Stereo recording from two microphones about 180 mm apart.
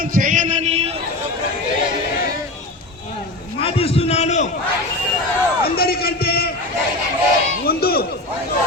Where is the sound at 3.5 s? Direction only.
35° left (ahead or behind).